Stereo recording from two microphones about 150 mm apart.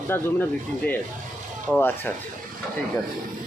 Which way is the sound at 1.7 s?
Centre (ahead or behind).